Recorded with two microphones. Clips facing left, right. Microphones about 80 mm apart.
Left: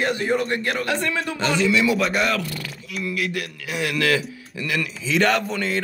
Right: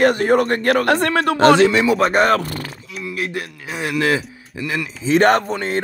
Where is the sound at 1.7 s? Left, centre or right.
Right.